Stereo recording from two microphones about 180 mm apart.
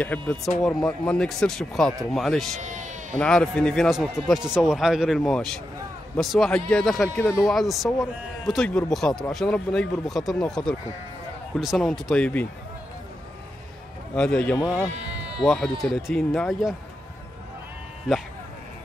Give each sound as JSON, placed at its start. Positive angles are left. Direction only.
{"t": 0.0, "sound": "a man's voice", "side_deg": 10}
{"t": 2.6, "sound": "bleat", "side_deg": -40}
{"t": 3.2, "sound": "a man's voice", "side_deg": 5}
{"t": 14.1, "sound": "a man's voice", "side_deg": 5}